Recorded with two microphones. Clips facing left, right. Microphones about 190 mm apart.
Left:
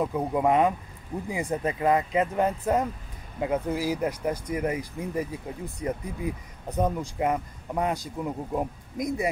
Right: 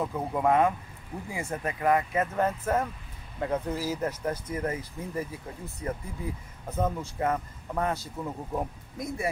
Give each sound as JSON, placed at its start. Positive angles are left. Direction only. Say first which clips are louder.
{"t": 0.0, "sound": "speech", "louder": "left 3 dB", "side_deg": 15}